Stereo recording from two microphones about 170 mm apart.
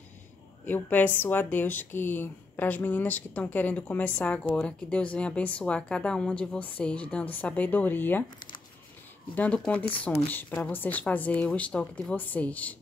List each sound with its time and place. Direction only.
0.7 s speech: 10° left (ahead or behind)
9.3 s speech: 10° left (ahead or behind)
9.8 s speech: 30° left (ahead or behind)
10.3 s speech: 10° left (ahead or behind)